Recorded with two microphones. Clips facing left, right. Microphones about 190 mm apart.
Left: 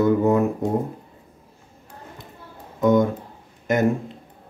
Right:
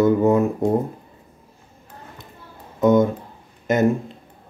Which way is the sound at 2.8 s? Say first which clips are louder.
Right 2 dB; 20° right (ahead or behind).